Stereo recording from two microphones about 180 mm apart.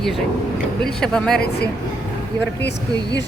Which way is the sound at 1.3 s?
60° left (ahead or behind).